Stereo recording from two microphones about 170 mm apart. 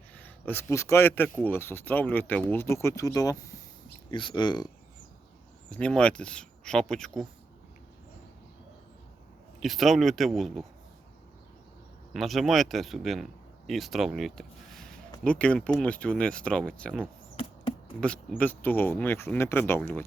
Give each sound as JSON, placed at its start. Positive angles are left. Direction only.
{"t": 0.1, "sound": "a man's voice", "side_deg": 10}
{"t": 5.7, "sound": "speech", "side_deg": 5}
{"t": 9.6, "sound": "speech", "side_deg": 0}
{"t": 12.1, "sound": "speech", "side_deg": 0}
{"t": 17.3, "sound": "insect", "side_deg": 30}
{"t": 18.3, "sound": "speech", "side_deg": 10}